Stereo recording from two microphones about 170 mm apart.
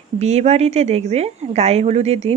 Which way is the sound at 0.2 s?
40° right (ahead or behind).